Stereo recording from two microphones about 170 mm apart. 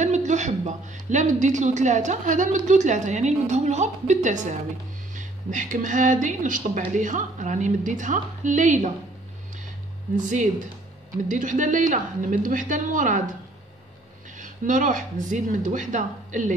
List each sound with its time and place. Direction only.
0.0 s a woman's voice: 45° right (ahead or behind)
10.1 s a woman's voice: 50° right (ahead or behind)
14.4 s a woman's voice: 50° right (ahead or behind)